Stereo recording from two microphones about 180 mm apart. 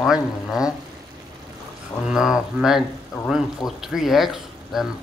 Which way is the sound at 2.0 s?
5° right (ahead or behind).